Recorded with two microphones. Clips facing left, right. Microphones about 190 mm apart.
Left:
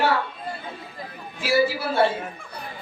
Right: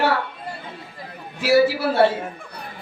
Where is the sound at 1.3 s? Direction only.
70° right (ahead or behind).